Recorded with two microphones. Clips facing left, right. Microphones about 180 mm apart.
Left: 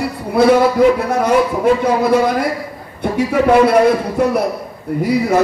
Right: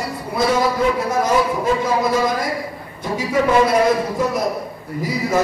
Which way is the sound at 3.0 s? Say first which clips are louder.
Left 5 dB; 60° left (ahead or behind).